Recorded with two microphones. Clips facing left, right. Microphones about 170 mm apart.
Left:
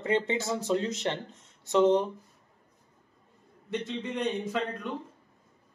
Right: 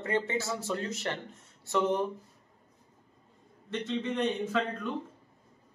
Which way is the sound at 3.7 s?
10° left (ahead or behind).